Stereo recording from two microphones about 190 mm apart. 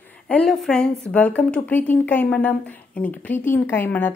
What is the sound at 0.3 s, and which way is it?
A woman's voice, 5° left (ahead or behind).